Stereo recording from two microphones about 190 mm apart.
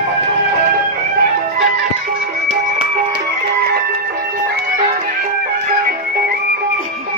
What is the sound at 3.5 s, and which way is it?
Music, 55° right (ahead or behind).